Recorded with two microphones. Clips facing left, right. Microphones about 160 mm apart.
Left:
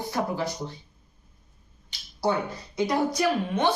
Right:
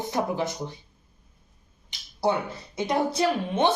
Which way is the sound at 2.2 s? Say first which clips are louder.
Right 1 dB; 20° right (ahead or behind).